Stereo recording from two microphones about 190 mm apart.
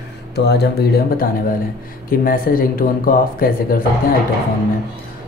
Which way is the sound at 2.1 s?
50° left (ahead or behind).